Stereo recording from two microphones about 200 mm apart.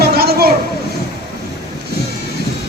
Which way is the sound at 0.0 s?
50° right (ahead or behind).